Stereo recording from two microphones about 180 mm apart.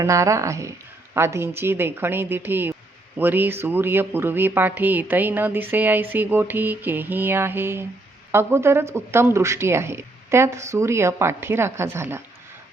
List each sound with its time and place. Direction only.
0.0 s speech: 15° right (ahead or behind)